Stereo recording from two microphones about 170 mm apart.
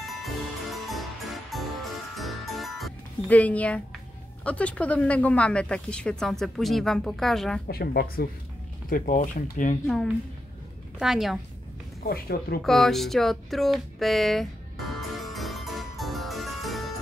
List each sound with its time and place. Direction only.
0.0 s music: centre (ahead or behind)
4.5 s speech: 5° left (ahead or behind)
7.6 s speech: 65° left (ahead or behind)
8.8 s speech: 55° left (ahead or behind)
9.8 s speech: centre (ahead or behind)
12.0 s speech: 65° left (ahead or behind)
12.6 s speech: centre (ahead or behind)
15.0 s music: centre (ahead or behind)